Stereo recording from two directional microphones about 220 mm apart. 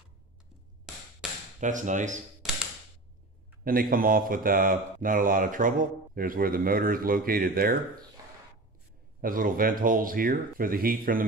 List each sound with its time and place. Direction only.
1.6 s speech: 35° right (ahead or behind)
3.6 s speech: 40° right (ahead or behind)
9.2 s speech: 40° right (ahead or behind)